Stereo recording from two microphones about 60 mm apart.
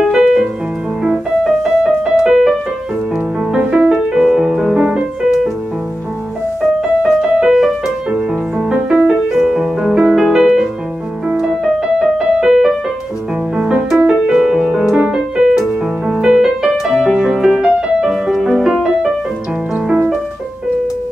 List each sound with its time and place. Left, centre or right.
0.0 s music: centre
3.5 s music: centre
6.8 s music: centre
8.1 s music: centre
13.6 s music: centre